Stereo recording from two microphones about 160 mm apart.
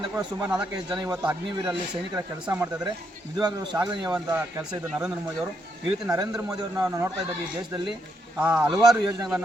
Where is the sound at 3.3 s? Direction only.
25° right (ahead or behind).